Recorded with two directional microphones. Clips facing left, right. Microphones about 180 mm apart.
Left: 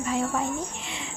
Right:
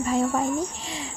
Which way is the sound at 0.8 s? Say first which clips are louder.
Right 3 dB; 35° right (ahead or behind).